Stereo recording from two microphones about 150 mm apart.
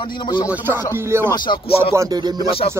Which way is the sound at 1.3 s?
30° left (ahead or behind).